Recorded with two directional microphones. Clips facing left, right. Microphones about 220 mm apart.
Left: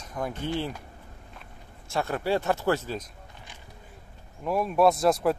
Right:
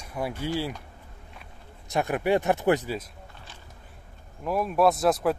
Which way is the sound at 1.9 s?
15° right (ahead or behind).